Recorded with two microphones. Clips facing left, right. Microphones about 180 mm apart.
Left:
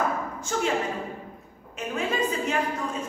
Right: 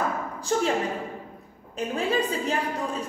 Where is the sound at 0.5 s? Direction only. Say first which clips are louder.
Right 3 dB; 40° right (ahead or behind).